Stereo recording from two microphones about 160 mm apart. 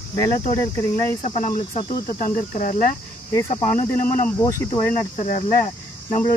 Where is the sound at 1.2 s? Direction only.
45° left (ahead or behind).